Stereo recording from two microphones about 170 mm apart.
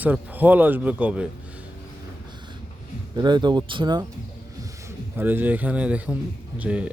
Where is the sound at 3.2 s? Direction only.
25° right (ahead or behind).